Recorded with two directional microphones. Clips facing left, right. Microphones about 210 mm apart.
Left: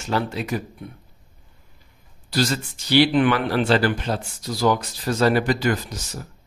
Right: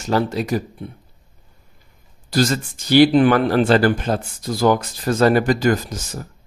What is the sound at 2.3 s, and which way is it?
Speech, 50° right (ahead or behind).